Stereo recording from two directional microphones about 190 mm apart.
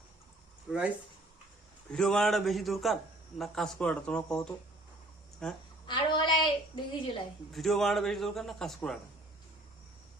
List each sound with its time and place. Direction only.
0.7 s a man's voice: centre (ahead or behind)
1.9 s a man's voice: 5° left (ahead or behind)
5.8 s a sound: 25° left (ahead or behind)
6.4 s a woman's voice: 25° left (ahead or behind)
7.5 s a man's voice: centre (ahead or behind)